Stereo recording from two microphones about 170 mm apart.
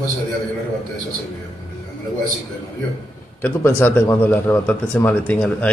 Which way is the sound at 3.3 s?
10° left (ahead or behind).